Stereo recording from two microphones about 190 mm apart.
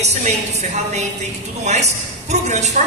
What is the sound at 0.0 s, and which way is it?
A woman's voice, 35° right (ahead or behind).